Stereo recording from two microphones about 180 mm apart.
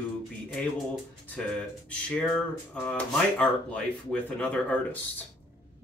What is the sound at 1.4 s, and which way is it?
Speech, 5° left (ahead or behind).